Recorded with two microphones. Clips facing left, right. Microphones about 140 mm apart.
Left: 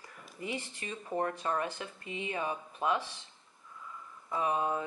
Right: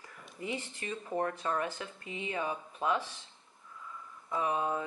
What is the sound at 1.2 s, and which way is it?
Speech, 20° left (ahead or behind).